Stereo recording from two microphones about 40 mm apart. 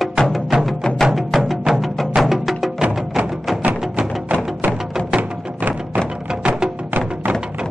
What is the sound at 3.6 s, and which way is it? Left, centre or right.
Music, right.